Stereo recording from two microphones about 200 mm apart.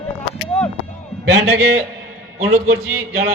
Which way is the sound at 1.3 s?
55° right (ahead or behind).